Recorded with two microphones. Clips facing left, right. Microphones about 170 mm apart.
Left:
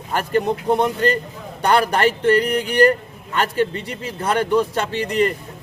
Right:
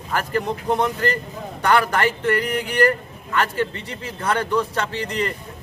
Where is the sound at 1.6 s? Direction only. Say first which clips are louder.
Left 2 dB; 25° left (ahead or behind).